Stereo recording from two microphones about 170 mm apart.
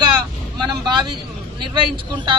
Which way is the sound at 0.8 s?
25° right (ahead or behind).